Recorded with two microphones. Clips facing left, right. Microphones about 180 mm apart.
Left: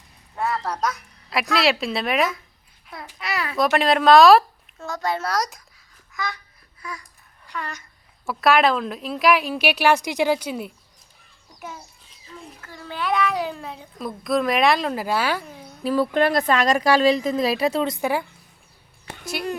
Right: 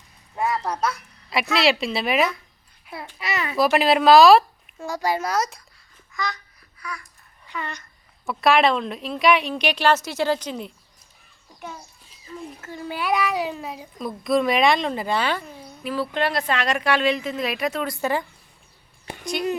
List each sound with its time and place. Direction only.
0.3 s a woman's voice: 10° right (ahead or behind)
4.8 s speech: 15° right (ahead or behind)
7.4 s a child's voice: centre (ahead or behind)
12.6 s a child's voice: 15° right (ahead or behind); by 15.4 s 5° left (ahead or behind)
15.8 s speech: 40° left (ahead or behind)
17.9 s a child's voice: 10° left (ahead or behind)